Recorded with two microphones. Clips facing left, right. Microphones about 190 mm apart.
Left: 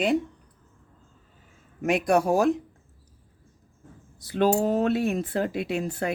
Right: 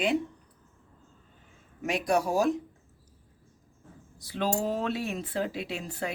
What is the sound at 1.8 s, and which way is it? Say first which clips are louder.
Speech: left 5 dB; 55° left (ahead or behind).